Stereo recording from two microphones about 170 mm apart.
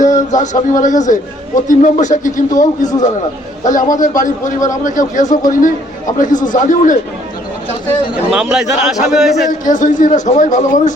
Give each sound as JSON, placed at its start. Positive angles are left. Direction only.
{"t": 0.0, "sound": "a man's voice", "side_deg": 45}
{"t": 8.1, "sound": "a man's voice", "side_deg": -5}
{"t": 9.5, "sound": "a man's voice", "side_deg": 50}